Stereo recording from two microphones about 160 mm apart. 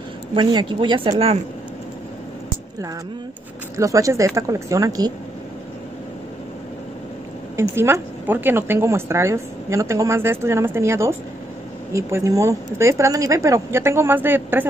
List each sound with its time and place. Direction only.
0.3 s speech: 30° right (ahead or behind)
3.7 s speech: 20° right (ahead or behind)
7.5 s a woman's voice: 15° right (ahead or behind)